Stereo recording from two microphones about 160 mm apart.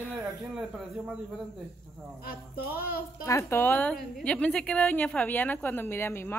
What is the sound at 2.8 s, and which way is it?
Speech, 70° left (ahead or behind).